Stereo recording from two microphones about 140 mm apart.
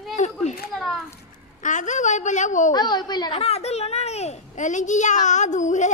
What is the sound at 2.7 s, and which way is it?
Speech, 30° left (ahead or behind).